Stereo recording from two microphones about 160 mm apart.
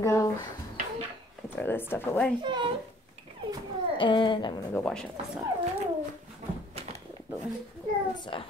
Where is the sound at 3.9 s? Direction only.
30° left (ahead or behind).